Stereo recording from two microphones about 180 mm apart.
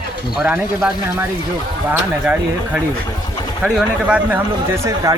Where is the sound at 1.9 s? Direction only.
10° right (ahead or behind).